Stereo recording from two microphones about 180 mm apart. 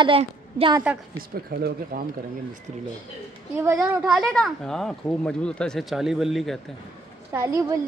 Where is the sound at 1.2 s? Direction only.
55° right (ahead or behind).